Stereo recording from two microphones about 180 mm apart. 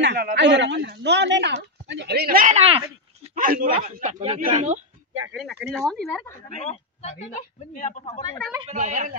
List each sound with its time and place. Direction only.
0.0 s speech: 65° right (ahead or behind)
2.5 s speech: 35° right (ahead or behind)
3.3 s a man's voice: 50° right (ahead or behind)
5.3 s speech: 5° right (ahead or behind)
6.6 s speech: 35° left (ahead or behind)
8.6 s a woman's voice: 40° right (ahead or behind)